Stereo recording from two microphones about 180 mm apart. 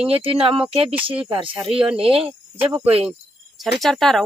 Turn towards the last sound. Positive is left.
turn(degrees=0)  # may be behind; listen again after turning